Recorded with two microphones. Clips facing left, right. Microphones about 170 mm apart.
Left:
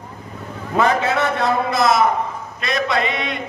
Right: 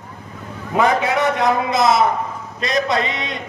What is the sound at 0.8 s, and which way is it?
A man's voice, 15° right (ahead or behind).